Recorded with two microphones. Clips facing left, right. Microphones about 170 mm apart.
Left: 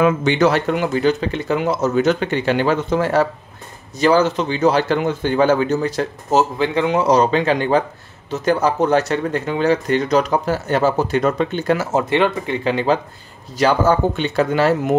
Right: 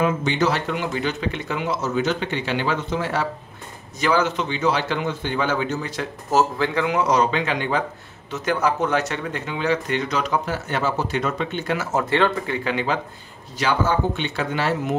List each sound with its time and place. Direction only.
0.0 s speech: 65° left (ahead or behind); by 3.3 s 45° left (ahead or behind)
4.0 s speech: 35° left (ahead or behind)
6.3 s speech: 20° left (ahead or behind); by 11.9 s 40° left (ahead or behind)
11.9 s speech: 20° left (ahead or behind)
12.6 s speech: 35° left (ahead or behind)